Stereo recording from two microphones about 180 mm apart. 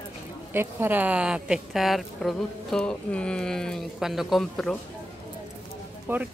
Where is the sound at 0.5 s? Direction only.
10° right (ahead or behind).